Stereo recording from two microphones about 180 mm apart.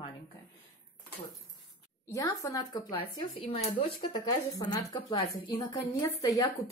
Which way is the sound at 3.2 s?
30° left (ahead or behind).